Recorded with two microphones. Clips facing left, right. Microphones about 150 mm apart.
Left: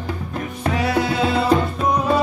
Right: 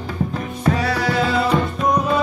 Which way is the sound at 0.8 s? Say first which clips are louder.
Left 1 dB; 25° left (ahead or behind).